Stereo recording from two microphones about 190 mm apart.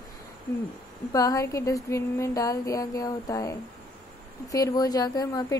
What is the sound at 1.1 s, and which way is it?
A woman's voice, 15° left (ahead or behind).